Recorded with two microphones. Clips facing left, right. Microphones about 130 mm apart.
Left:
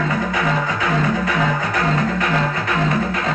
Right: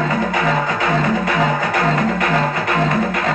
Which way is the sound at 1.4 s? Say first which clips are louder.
Right 2 dB; 30° right (ahead or behind).